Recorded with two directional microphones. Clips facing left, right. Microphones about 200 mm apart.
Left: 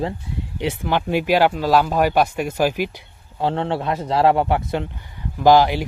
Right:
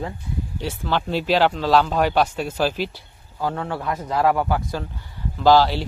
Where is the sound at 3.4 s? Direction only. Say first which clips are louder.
Left 4 dB; 25° left (ahead or behind).